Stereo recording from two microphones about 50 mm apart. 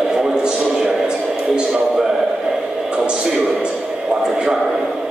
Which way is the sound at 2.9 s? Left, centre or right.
Centre.